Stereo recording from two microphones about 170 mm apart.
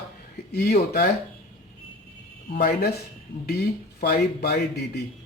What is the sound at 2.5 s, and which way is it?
Speech, 60° left (ahead or behind).